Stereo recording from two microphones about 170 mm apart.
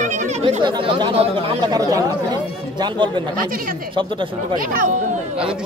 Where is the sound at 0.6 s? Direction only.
30° right (ahead or behind).